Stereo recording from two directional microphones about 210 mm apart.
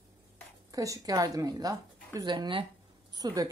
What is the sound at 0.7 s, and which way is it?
A woman's voice, 15° right (ahead or behind).